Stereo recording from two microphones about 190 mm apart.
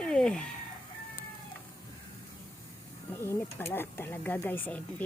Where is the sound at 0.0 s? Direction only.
5° left (ahead or behind).